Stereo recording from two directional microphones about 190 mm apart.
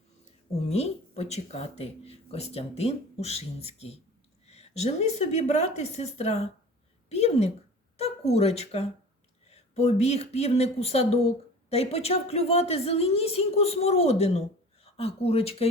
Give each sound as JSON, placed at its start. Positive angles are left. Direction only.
{"t": 0.7, "sound": "speech", "side_deg": 35}